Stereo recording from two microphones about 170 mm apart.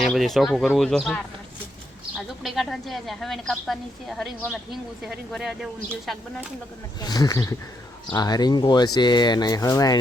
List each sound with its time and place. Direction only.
0.0 s speech: centre (ahead or behind)
7.0 s speech: 25° left (ahead or behind)